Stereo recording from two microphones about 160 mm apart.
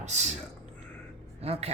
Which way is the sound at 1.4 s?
40° right (ahead or behind).